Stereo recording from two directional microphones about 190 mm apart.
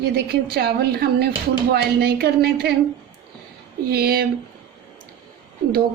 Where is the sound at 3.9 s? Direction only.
55° right (ahead or behind).